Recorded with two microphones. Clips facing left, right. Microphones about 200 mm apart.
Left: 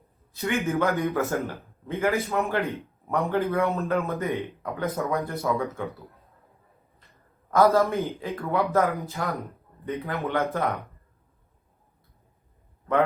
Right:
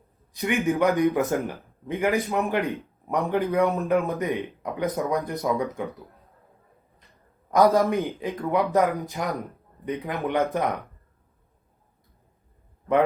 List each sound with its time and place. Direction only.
0.3 s a man's voice: 15° right (ahead or behind)
7.5 s a man's voice: 15° right (ahead or behind)